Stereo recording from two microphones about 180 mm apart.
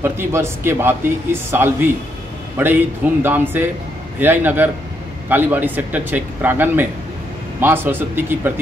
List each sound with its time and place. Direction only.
0.0 s speech: 15° right (ahead or behind)